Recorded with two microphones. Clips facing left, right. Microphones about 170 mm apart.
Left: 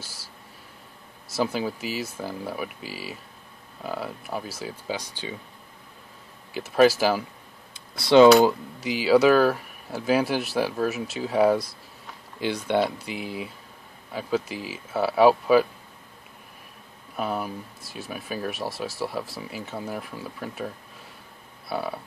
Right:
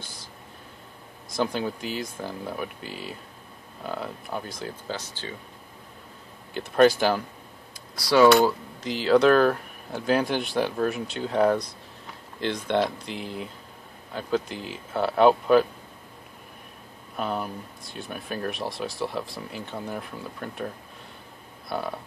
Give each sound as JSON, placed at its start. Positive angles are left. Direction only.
{"t": 0.0, "sound": "a sound", "side_deg": 5}
{"t": 1.3, "sound": "speech", "side_deg": 5}
{"t": 6.5, "sound": "speech", "side_deg": 5}
{"t": 8.0, "sound": "speech", "side_deg": 25}
{"t": 8.4, "sound": "speech", "side_deg": 10}
{"t": 17.2, "sound": "speech", "side_deg": 5}